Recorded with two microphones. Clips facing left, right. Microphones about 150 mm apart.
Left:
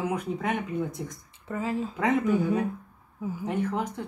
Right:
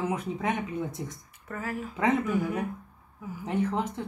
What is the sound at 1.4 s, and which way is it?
Speech, 20° left (ahead or behind).